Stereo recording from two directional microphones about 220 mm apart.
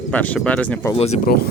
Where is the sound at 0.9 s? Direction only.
30° left (ahead or behind).